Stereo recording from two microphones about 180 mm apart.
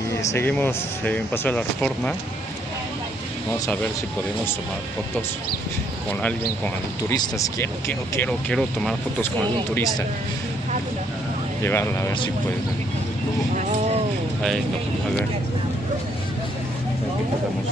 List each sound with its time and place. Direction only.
0.2 s speech: 15° left (ahead or behind)
6.6 s speech: 15° left (ahead or behind)
8.2 s speech: 5° left (ahead or behind)
11.6 s speech: 15° left (ahead or behind)